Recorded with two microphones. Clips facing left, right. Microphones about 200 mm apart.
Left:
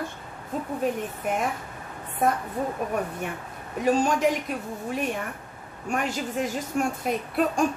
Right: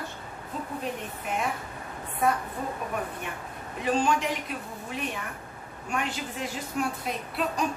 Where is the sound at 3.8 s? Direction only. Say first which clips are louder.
Left 4 dB; 45° left (ahead or behind).